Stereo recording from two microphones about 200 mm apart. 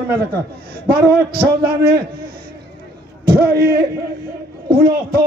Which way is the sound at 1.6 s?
50° right (ahead or behind).